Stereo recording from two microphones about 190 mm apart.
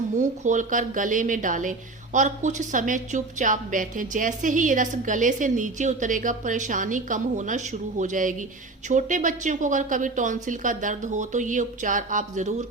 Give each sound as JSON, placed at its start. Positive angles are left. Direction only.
{"t": 0.2, "sound": "a woman's voice", "side_deg": -40}